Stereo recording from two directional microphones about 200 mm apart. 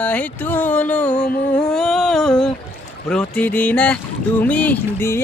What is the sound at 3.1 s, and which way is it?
Speech, 5° left (ahead or behind).